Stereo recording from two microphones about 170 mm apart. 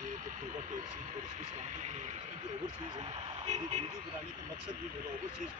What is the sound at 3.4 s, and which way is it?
Speech, 40° right (ahead or behind).